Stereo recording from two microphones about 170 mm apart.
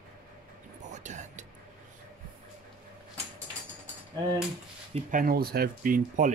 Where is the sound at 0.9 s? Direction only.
45° right (ahead or behind).